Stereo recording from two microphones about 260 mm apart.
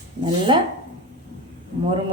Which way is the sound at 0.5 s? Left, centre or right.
Centre.